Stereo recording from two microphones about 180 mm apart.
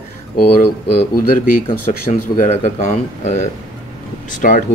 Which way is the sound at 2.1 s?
40° left (ahead or behind).